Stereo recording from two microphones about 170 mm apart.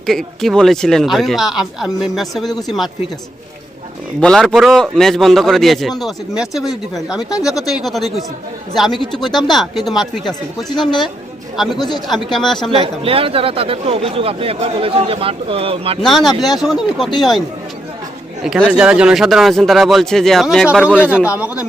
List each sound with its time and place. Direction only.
0.0 s speech: centre (ahead or behind)
4.2 s speech: 5° left (ahead or behind)
12.7 s speech: 35° right (ahead or behind)
16.0 s speech: centre (ahead or behind)
18.4 s speech: centre (ahead or behind)